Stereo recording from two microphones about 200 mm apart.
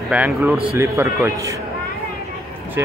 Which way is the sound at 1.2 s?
15° right (ahead or behind).